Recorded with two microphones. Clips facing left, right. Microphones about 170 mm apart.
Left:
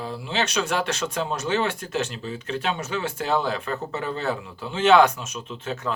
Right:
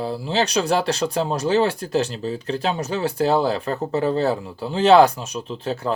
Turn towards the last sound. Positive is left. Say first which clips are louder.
# right 5 dB
turn(degrees=-35)  # may be behind; listen again after turning